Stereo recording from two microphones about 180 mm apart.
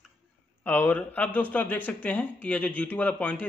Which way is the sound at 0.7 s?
10° left (ahead or behind).